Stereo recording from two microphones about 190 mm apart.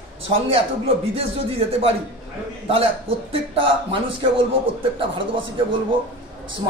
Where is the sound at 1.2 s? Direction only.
30° right (ahead or behind).